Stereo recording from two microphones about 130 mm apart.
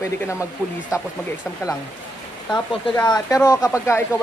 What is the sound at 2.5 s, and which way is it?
A woman's voice, 30° left (ahead or behind).